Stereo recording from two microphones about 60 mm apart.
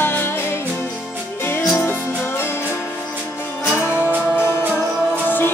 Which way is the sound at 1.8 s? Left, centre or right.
Left.